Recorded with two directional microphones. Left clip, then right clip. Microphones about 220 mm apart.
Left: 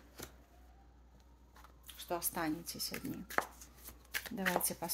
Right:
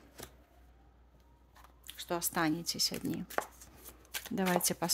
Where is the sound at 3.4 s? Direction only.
10° right (ahead or behind).